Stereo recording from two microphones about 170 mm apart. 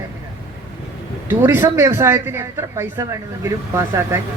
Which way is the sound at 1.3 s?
10° right (ahead or behind).